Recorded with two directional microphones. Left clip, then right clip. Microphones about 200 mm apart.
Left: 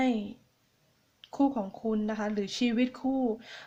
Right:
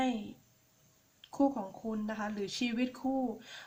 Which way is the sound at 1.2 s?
30° left (ahead or behind).